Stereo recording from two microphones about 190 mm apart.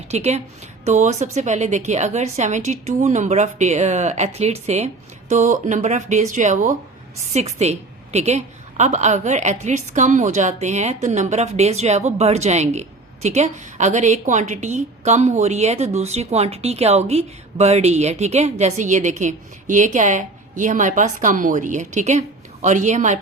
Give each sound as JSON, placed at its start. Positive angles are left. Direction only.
{"t": 0.1, "sound": "a woman's voice", "side_deg": -35}